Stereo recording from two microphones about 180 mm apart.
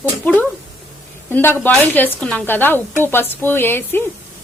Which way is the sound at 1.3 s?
10° left (ahead or behind).